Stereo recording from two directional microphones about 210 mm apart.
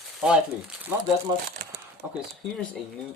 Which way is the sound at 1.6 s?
45° right (ahead or behind).